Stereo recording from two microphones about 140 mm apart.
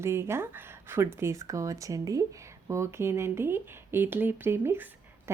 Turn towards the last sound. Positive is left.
turn(degrees=-20)  # may be behind; listen again after turning